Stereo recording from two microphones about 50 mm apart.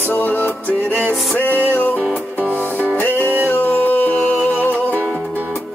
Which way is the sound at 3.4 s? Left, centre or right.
Left.